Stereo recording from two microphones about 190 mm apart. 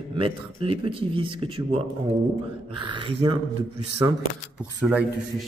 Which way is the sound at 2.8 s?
25° right (ahead or behind).